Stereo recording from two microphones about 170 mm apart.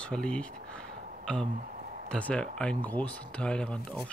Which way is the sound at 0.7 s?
5° left (ahead or behind).